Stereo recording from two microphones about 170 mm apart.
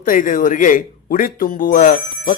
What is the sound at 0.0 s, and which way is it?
A man's voice, 50° left (ahead or behind).